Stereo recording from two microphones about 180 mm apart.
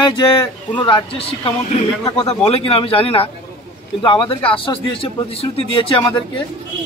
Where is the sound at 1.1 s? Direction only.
30° left (ahead or behind).